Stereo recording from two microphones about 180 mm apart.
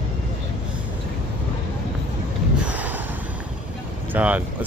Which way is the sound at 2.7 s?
10° right (ahead or behind).